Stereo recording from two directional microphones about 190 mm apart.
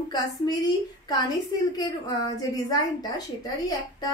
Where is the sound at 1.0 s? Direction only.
20° left (ahead or behind).